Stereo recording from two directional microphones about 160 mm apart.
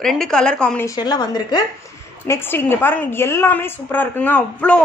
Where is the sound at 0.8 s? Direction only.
25° left (ahead or behind).